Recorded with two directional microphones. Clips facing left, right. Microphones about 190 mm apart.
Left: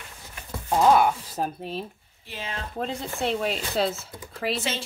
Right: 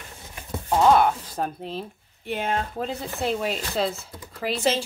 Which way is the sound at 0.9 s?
10° left (ahead or behind).